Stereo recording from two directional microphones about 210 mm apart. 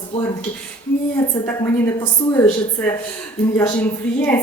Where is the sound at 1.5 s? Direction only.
10° left (ahead or behind).